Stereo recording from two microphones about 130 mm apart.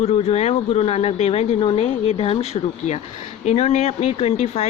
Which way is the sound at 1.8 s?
50° left (ahead or behind).